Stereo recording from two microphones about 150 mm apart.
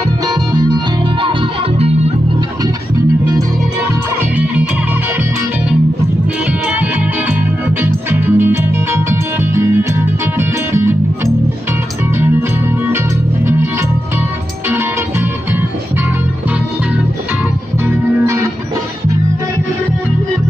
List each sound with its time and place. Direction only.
0.3 s music: 25° right (ahead or behind)
4.2 s music: 10° right (ahead or behind)
6.4 s music: 10° right (ahead or behind)
12.2 s music: 15° right (ahead or behind)
17.8 s music: 20° right (ahead or behind)